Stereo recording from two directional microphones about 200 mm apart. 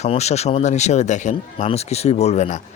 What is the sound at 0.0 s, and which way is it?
Speech, 35° left (ahead or behind).